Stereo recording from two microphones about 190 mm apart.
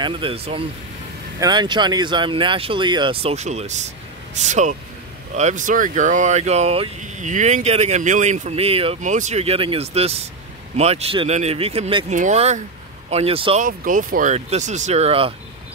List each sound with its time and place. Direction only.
0.0 s speech: 30° right (ahead or behind)
13.6 s speech: 45° right (ahead or behind)